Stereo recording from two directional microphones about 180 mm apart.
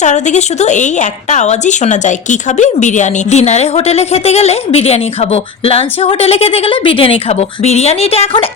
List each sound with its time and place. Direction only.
0.0 s a woman's voice: 40° left (ahead or behind)